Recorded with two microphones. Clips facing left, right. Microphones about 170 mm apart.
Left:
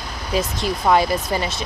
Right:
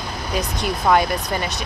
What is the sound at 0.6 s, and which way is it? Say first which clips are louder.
Speech: even; 5° left (ahead or behind).